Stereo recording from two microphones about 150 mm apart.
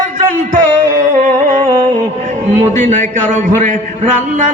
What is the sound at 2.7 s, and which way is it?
A man's voice, 55° right (ahead or behind).